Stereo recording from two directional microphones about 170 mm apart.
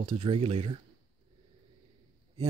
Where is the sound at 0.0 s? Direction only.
30° right (ahead or behind).